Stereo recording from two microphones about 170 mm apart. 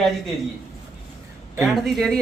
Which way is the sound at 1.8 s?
Centre (ahead or behind).